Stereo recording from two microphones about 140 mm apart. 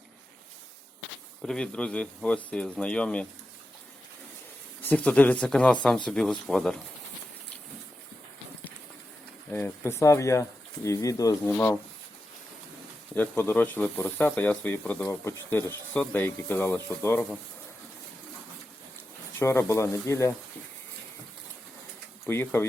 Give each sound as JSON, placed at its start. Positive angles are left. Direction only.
{"t": 1.4, "sound": "speech", "side_deg": 5}
{"t": 4.8, "sound": "speech", "side_deg": 10}
{"t": 9.5, "sound": "speech", "side_deg": 15}
{"t": 13.1, "sound": "speech", "side_deg": 15}
{"t": 19.4, "sound": "speech", "side_deg": 20}
{"t": 22.3, "sound": "speech", "side_deg": 15}